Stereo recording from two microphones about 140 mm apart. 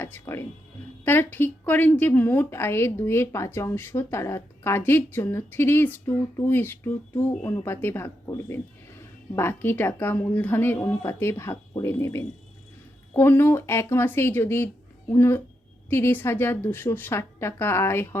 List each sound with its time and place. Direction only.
0.0 s a woman's voice: 15° left (ahead or behind)